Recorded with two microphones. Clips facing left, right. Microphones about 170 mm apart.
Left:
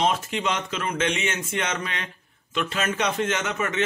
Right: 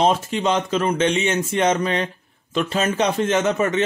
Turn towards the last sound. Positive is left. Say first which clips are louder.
# right 8 dB
turn(degrees=-35)  # may be behind; listen again after turning